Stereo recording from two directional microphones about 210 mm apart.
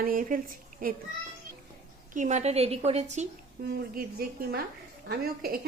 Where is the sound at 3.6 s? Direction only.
45° right (ahead or behind).